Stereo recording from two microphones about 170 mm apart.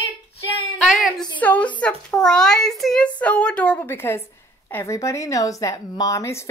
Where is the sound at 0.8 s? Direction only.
Centre (ahead or behind).